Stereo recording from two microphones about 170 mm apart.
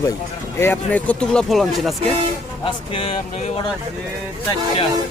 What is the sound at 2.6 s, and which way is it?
Speech, 30° left (ahead or behind).